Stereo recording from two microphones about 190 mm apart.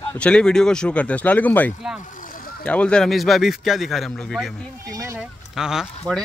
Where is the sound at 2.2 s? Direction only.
45° left (ahead or behind).